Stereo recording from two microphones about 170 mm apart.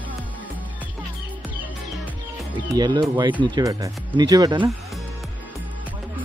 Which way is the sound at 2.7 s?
25° right (ahead or behind).